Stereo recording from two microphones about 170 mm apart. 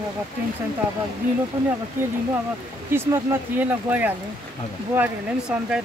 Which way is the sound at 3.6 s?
10° right (ahead or behind).